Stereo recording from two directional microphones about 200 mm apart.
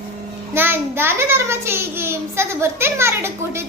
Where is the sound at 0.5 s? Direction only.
10° right (ahead or behind).